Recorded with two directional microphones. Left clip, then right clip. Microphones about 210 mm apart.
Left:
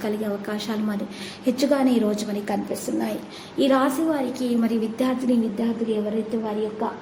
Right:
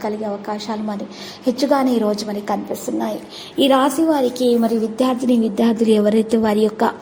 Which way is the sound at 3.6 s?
20° right (ahead or behind).